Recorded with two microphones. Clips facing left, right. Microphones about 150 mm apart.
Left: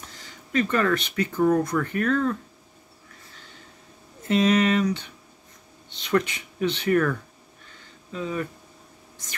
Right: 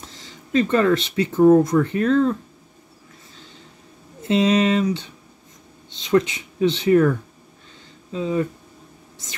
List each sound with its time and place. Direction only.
0.2 s speech: 25° right (ahead or behind)
4.3 s speech: 25° right (ahead or behind)
6.0 s speech: 20° right (ahead or behind)